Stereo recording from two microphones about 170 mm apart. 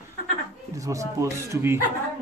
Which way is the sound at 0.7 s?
20° right (ahead or behind).